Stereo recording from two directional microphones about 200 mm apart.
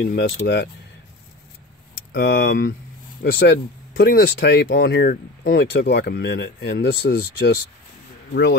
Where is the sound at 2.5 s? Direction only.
45° left (ahead or behind).